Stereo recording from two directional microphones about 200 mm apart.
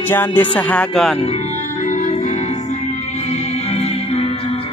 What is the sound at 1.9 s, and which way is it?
Music, 40° left (ahead or behind).